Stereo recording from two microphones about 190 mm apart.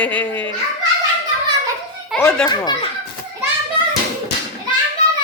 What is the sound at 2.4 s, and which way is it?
Speech, 20° left (ahead or behind).